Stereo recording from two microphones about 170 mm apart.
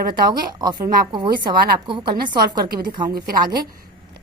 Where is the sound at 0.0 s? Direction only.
55° right (ahead or behind).